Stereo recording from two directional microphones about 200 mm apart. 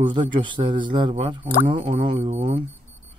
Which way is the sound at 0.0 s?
25° right (ahead or behind).